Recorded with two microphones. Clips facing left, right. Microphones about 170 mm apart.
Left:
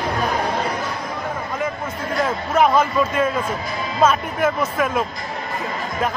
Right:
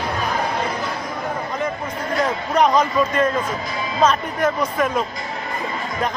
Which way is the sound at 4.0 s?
5° left (ahead or behind).